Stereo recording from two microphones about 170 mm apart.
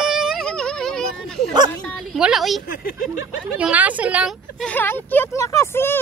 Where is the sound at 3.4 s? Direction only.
5° right (ahead or behind).